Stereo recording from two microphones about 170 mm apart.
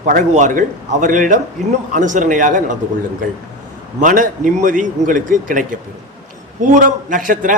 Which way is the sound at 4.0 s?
50° right (ahead or behind).